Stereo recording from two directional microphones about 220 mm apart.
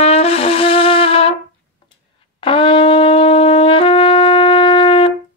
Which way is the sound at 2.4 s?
25° left (ahead or behind).